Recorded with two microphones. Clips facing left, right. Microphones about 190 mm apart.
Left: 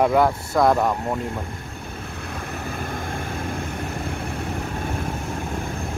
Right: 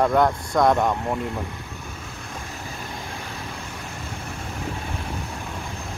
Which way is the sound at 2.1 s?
60° left (ahead or behind).